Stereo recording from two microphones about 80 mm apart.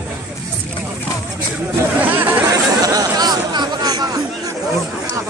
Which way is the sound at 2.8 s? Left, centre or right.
Right.